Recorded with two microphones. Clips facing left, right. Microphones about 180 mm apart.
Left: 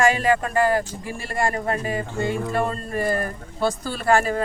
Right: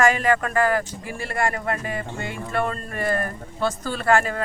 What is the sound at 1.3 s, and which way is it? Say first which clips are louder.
Speech: left 1 dB; 35° left (ahead or behind).